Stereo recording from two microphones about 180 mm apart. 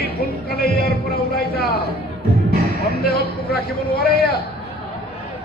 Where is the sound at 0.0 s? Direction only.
60° left (ahead or behind).